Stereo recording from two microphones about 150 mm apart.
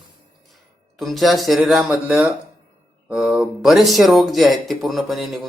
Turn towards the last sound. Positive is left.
turn(degrees=0)  # may be behind; listen again after turning